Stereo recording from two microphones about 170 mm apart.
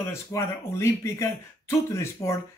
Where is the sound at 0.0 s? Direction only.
15° left (ahead or behind).